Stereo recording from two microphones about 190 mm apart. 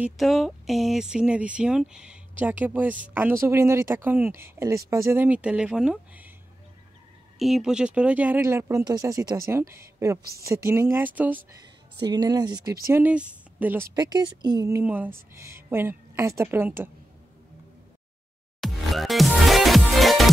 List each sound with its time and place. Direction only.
0.0 s speech: centre (ahead or behind)
7.3 s speech: centre (ahead or behind)
12.0 s speech: 20° right (ahead or behind)
18.6 s music: centre (ahead or behind)